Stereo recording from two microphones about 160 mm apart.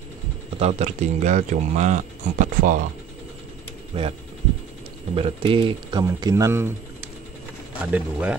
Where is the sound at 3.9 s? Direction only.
35° right (ahead or behind).